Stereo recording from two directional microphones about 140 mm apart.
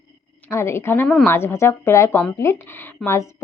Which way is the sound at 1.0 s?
5° left (ahead or behind).